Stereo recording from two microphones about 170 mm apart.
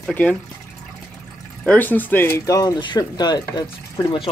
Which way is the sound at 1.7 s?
10° left (ahead or behind).